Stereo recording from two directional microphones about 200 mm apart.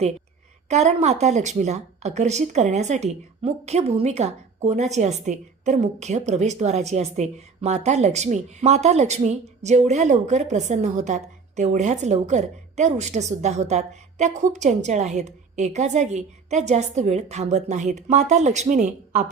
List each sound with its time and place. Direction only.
0.7 s a woman's voice: 35° right (ahead or behind)